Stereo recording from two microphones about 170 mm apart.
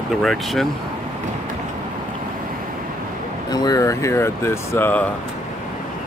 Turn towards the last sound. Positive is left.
turn(degrees=10)  # may be behind; listen again after turning